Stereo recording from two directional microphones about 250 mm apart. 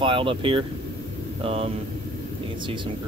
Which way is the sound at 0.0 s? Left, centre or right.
Centre.